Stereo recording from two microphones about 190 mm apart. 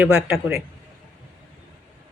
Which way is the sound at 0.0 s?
5° right (ahead or behind).